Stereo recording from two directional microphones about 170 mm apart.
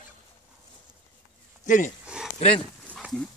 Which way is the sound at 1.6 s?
45° left (ahead or behind).